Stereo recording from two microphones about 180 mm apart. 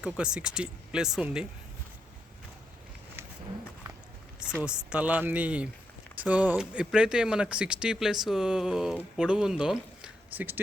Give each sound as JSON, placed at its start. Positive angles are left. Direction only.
{"t": 0.0, "sound": "speech", "side_deg": -5}
{"t": 4.4, "sound": "speech", "side_deg": -5}